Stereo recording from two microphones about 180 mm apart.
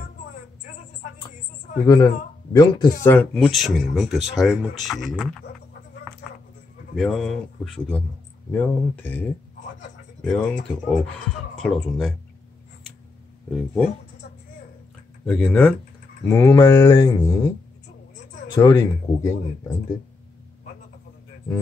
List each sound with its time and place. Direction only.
2.5 s speech: 20° left (ahead or behind)
3.3 s speech: centre (ahead or behind)
7.0 s speech: centre (ahead or behind)
13.5 s speech: centre (ahead or behind)
15.2 s speech: 5° left (ahead or behind)
18.5 s speech: 20° left (ahead or behind)